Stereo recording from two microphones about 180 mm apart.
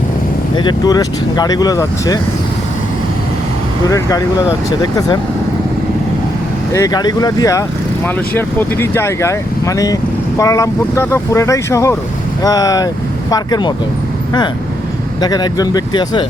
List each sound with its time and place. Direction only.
0.5 s speech: 25° left (ahead or behind)
3.8 s speech: 20° left (ahead or behind)
6.7 s speech: 20° left (ahead or behind)
15.2 s speech: 20° left (ahead or behind)